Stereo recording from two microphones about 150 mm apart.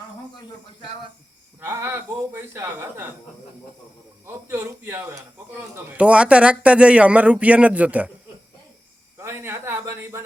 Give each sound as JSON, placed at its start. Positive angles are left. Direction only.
{"t": 1.6, "sound": "speech", "side_deg": -15}
{"t": 4.3, "sound": "speech", "side_deg": -15}
{"t": 9.1, "sound": "speech", "side_deg": -15}